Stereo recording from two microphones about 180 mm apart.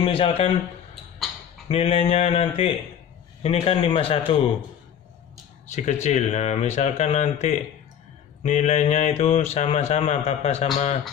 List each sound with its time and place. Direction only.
0.0 s speech: 30° left (ahead or behind)
1.7 s speech: 35° left (ahead or behind)
5.7 s speech: 40° left (ahead or behind)